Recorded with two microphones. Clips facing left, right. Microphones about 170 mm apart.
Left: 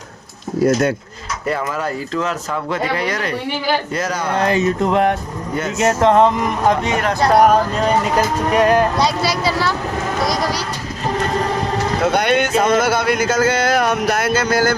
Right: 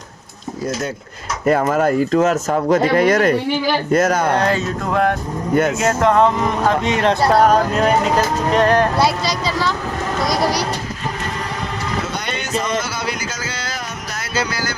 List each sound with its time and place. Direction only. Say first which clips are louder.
1.5 s speech: right 7 dB; 50° right (ahead or behind)
4.5 s music: left 4 dB; 20° left (ahead or behind)
6.8 s speech: right 2 dB; 20° right (ahead or behind)
8.4 s speech: left 1 dB; 10° left (ahead or behind)
12.0 s speech: left 10 dB; 60° left (ahead or behind)